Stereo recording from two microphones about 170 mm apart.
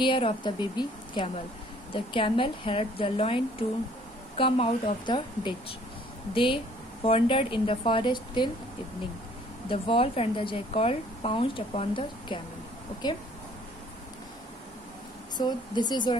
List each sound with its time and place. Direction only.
0.0 s a woman's voice: 30° left (ahead or behind)
9.7 s a woman's voice: 30° left (ahead or behind)
15.3 s speech: 25° left (ahead or behind)